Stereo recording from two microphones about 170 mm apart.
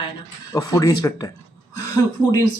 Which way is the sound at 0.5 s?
20° left (ahead or behind).